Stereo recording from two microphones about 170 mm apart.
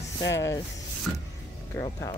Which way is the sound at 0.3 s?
20° left (ahead or behind).